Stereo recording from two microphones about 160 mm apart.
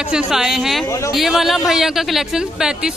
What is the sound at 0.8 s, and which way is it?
Speech, 20° left (ahead or behind).